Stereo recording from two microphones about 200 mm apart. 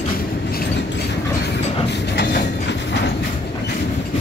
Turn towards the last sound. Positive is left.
turn(degrees=60)  # may be behind; listen again after turning